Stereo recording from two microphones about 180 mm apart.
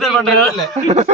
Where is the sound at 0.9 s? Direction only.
35° right (ahead or behind).